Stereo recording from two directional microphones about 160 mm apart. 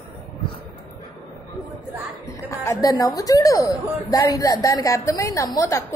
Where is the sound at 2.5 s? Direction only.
20° left (ahead or behind).